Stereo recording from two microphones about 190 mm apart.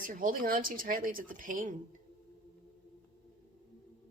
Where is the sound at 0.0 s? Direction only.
45° right (ahead or behind).